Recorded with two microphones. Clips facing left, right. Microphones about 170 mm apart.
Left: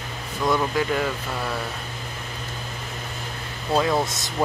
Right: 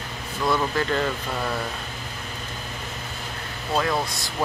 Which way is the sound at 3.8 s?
20° left (ahead or behind).